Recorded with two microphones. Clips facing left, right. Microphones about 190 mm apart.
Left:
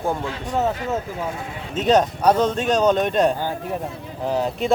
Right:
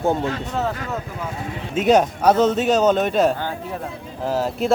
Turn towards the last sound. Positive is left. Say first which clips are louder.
# right 1 dB
turn(degrees=0)  # may be behind; listen again after turning